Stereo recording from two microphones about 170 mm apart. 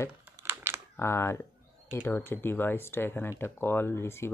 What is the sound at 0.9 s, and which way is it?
Speech, 15° left (ahead or behind).